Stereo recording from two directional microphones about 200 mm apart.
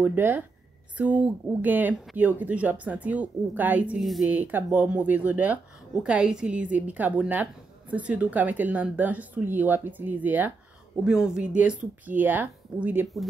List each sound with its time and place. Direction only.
0.0 s speech: 10° right (ahead or behind)